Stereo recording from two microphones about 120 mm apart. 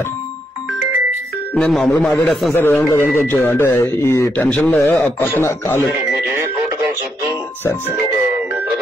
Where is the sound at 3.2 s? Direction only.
15° left (ahead or behind).